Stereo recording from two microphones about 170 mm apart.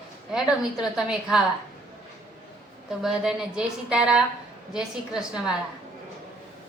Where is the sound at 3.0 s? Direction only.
Centre (ahead or behind).